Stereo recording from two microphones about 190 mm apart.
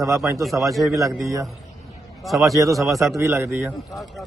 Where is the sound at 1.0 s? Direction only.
15° right (ahead or behind).